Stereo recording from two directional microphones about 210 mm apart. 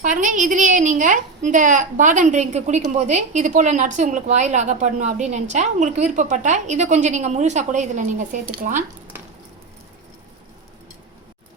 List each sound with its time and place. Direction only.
0.0 s a woman's voice: 35° right (ahead or behind)